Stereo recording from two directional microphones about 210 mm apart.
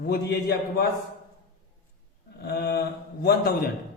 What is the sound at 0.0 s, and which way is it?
Speech, 50° left (ahead or behind).